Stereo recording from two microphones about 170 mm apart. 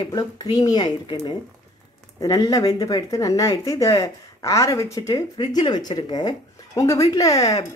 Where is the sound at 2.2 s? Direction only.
20° left (ahead or behind).